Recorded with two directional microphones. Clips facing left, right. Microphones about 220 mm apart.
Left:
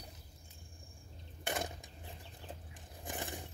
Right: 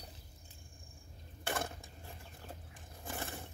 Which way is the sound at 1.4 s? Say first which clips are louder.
Even; 15° left (ahead or behind).